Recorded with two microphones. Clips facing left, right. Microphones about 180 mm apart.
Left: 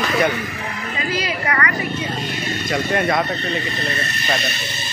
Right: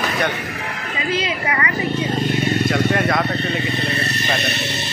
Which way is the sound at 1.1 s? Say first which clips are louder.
Right 1 dB; 25° right (ahead or behind).